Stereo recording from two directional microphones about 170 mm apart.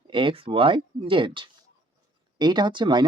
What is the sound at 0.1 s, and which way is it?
Speech, 30° right (ahead or behind).